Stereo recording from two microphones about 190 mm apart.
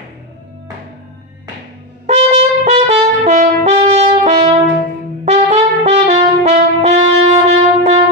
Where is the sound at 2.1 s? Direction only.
35° right (ahead or behind).